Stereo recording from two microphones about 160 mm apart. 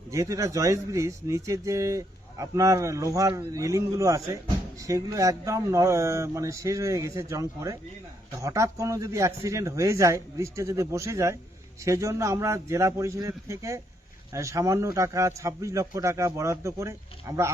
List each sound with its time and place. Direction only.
0.1 s speech: 20° right (ahead or behind)